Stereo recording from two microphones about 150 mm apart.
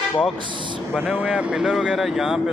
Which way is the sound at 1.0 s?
10° right (ahead or behind).